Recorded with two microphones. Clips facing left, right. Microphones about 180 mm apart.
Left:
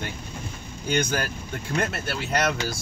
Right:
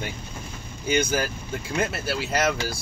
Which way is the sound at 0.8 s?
5° right (ahead or behind).